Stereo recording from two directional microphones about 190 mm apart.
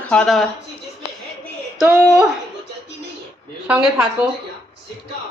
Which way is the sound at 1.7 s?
5° right (ahead or behind).